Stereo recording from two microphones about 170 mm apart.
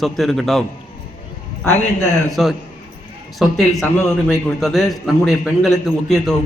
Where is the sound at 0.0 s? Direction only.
Centre (ahead or behind).